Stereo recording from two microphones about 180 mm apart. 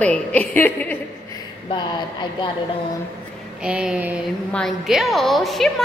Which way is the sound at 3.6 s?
5° right (ahead or behind).